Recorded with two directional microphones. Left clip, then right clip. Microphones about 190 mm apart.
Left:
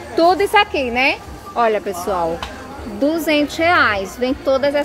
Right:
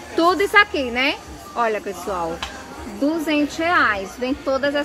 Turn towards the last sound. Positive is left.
turn(degrees=0)  # may be behind; listen again after turning